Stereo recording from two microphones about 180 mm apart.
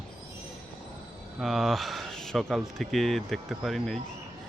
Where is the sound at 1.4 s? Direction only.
Centre (ahead or behind).